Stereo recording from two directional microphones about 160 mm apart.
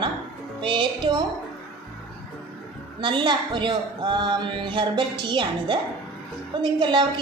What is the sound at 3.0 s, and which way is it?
Speech, 30° right (ahead or behind).